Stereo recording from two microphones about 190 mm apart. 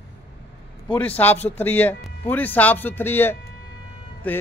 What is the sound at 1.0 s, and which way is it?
A man's voice, 10° left (ahead or behind).